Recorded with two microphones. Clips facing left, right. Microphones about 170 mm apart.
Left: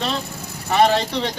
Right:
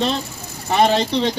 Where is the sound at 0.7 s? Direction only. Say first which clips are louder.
Even; 20° right (ahead or behind).